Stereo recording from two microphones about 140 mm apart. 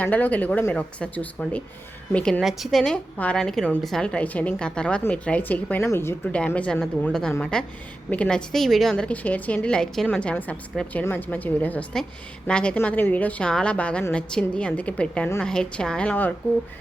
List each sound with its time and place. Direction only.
0.0 s a woman's voice: 10° left (ahead or behind)
2.4 s a woman's voice: centre (ahead or behind)